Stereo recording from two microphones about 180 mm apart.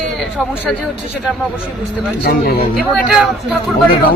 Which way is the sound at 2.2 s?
55° left (ahead or behind).